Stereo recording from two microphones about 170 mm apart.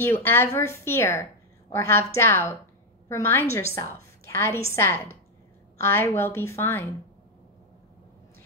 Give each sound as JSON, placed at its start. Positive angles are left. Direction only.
{"t": 0.0, "sound": "a woman's voice", "side_deg": 15}